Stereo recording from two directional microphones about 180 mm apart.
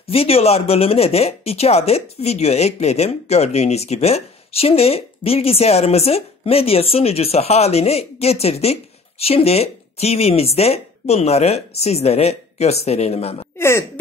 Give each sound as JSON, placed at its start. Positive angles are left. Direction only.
{"t": 0.0, "sound": "speech", "side_deg": 35}
{"t": 13.6, "sound": "music", "side_deg": 15}